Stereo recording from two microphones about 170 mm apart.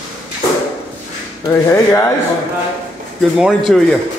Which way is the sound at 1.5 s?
15° left (ahead or behind).